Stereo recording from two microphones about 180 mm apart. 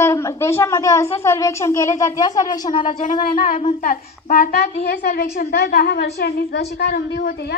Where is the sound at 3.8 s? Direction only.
50° left (ahead or behind).